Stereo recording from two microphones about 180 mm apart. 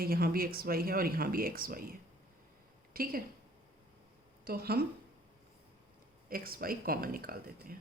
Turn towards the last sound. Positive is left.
turn(degrees=-55)  # may be behind; listen again after turning